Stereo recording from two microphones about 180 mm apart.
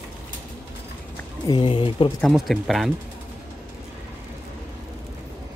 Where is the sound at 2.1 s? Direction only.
Centre (ahead or behind).